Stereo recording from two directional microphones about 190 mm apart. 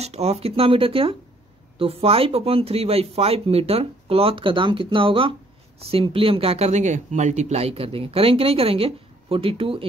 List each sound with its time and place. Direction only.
0.0 s speech: 35° right (ahead or behind)